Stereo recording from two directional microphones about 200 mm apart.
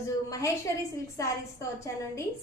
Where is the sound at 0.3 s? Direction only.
15° left (ahead or behind).